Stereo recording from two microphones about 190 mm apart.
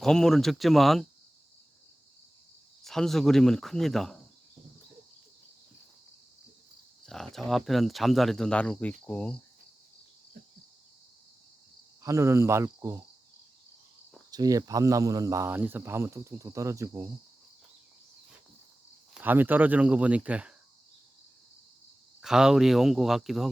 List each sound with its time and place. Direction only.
0.0 s speech: centre (ahead or behind)
2.8 s speech: centre (ahead or behind)
7.0 s speech: centre (ahead or behind)
12.0 s speech: 15° right (ahead or behind)
14.3 s speech: 20° right (ahead or behind)
19.1 s speech: 10° right (ahead or behind)
22.2 s speech: 5° right (ahead or behind)